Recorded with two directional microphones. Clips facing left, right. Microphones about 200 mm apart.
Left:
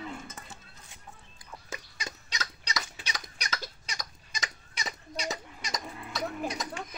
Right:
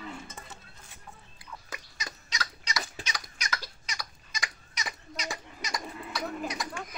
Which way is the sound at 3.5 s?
20° left (ahead or behind).